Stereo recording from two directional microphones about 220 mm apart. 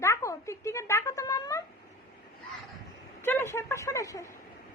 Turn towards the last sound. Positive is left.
turn(degrees=15)  # may be behind; listen again after turning